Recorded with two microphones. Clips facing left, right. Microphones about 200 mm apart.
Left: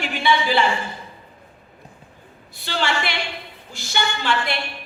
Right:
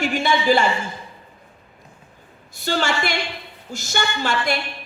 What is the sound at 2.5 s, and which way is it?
A woman's voice, 45° right (ahead or behind).